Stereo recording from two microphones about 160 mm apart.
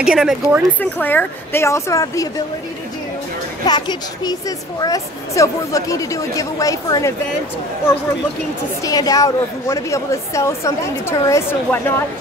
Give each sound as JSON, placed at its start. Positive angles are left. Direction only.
{"t": 0.0, "sound": "speech", "side_deg": -5}
{"t": 0.7, "sound": "a woman's voice", "side_deg": 10}
{"t": 3.6, "sound": "a woman's voice", "side_deg": 25}
{"t": 8.8, "sound": "a woman's voice", "side_deg": 20}